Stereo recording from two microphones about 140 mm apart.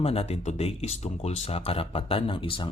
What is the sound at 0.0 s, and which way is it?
Speech, 45° left (ahead or behind).